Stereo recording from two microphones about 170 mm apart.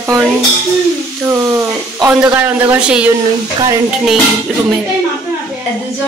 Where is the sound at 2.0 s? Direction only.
10° right (ahead or behind).